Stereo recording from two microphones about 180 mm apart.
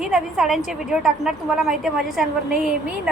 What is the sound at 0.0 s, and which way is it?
A woman's voice, centre (ahead or behind).